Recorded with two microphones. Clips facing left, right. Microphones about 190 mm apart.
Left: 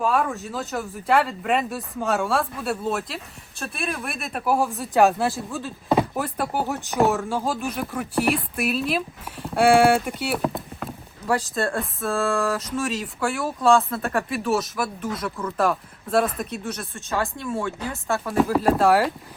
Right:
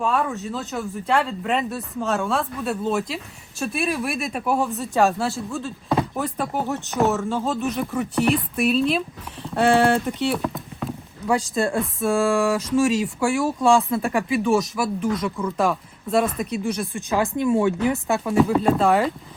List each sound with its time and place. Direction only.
0.0 s speech: centre (ahead or behind)
7.3 s speech: 10° left (ahead or behind)
16.7 s speech: 15° right (ahead or behind)
18.3 s speech: centre (ahead or behind)